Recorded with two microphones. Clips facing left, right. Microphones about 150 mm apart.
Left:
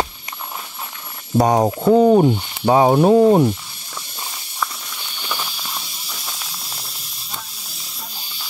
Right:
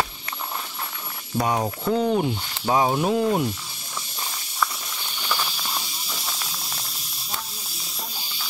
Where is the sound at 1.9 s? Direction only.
20° left (ahead or behind).